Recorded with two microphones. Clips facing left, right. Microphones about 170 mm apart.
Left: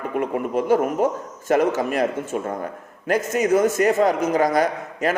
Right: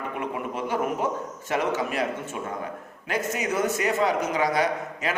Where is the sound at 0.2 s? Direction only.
45° left (ahead or behind).